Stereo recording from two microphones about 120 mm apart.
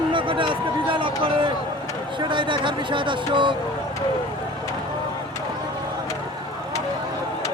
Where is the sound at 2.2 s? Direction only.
40° right (ahead or behind).